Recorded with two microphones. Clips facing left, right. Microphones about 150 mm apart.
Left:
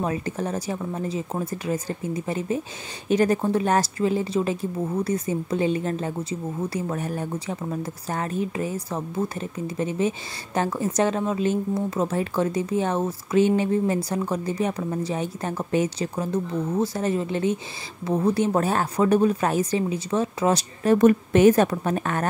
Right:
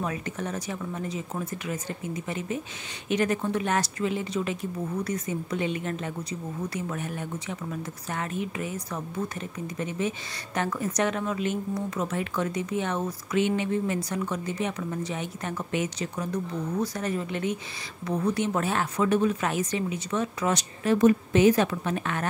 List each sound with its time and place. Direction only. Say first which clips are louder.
0.0 s a woman's voice: left 5 dB; 30° left (ahead or behind)
20.9 s a woman's voice: left 3 dB; 55° left (ahead or behind)